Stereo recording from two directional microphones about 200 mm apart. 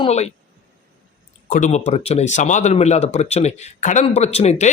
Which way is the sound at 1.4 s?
40° left (ahead or behind).